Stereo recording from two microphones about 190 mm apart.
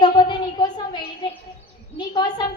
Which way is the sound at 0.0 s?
25° left (ahead or behind).